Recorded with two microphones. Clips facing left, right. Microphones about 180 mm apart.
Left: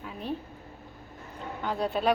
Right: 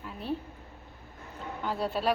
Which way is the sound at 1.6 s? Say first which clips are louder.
Left 2 dB; 5° right (ahead or behind).